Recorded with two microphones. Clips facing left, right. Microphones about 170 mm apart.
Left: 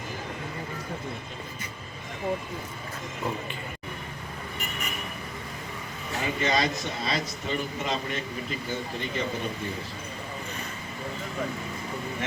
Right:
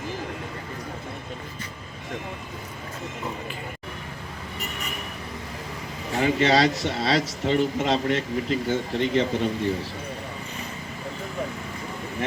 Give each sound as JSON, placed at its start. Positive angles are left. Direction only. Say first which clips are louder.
{"t": 6.1, "sound": "speech", "louder": "right 7 dB", "side_deg": -80}